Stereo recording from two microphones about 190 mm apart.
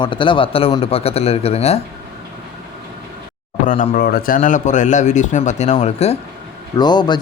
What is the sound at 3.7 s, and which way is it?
Speech, 45° left (ahead or behind).